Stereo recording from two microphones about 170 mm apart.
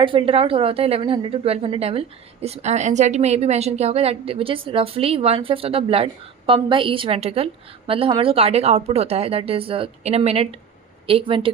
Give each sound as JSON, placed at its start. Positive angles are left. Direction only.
{"t": 0.0, "sound": "a woman's voice", "side_deg": -30}